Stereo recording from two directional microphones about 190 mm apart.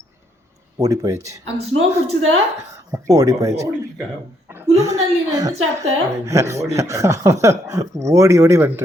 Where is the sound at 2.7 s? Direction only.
15° right (ahead or behind).